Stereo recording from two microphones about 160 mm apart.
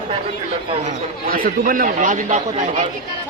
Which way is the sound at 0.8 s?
55° right (ahead or behind).